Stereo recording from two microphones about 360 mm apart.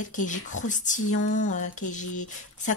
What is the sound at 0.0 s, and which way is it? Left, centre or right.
Speech, left.